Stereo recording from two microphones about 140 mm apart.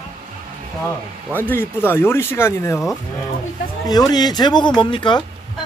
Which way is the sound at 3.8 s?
30° left (ahead or behind).